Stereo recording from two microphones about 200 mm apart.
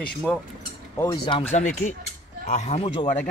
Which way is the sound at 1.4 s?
35° left (ahead or behind).